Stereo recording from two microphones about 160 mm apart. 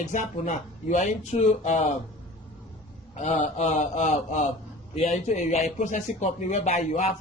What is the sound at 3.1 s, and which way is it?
A man's voice, 45° left (ahead or behind).